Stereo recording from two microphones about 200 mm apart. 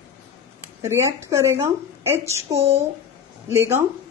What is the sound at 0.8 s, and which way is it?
A woman's voice, 15° right (ahead or behind).